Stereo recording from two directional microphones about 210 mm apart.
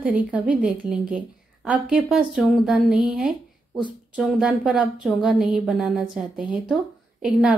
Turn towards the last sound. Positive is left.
turn(degrees=-5)  # may be behind; listen again after turning